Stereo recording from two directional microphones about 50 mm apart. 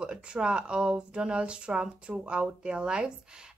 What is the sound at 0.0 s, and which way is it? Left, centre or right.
A woman's voice, centre.